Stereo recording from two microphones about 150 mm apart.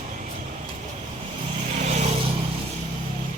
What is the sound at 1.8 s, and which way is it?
Vehicle, 50° right (ahead or behind).